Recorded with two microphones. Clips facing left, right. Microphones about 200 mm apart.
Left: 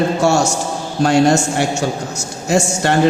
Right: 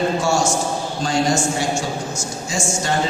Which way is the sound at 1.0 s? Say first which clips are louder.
Left 8 dB; 65° left (ahead or behind).